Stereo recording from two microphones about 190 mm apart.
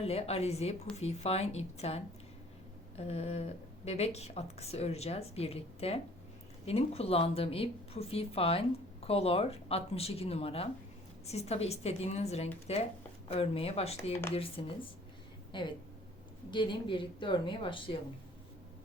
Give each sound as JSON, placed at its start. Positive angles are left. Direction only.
{"t": 0.0, "sound": "speech", "side_deg": 35}
{"t": 3.0, "sound": "a woman's voice", "side_deg": 35}